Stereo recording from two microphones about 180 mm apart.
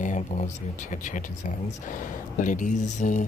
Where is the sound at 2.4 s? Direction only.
45° left (ahead or behind).